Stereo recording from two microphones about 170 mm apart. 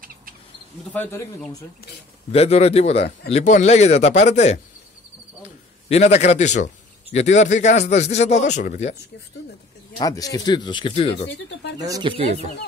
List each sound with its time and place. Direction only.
0.9 s speech: 10° left (ahead or behind)
2.3 s a man's voice: 40° left (ahead or behind)
5.9 s a man's voice: 40° left (ahead or behind)
9.9 s speech: 20° left (ahead or behind)
11.8 s speech: 25° right (ahead or behind)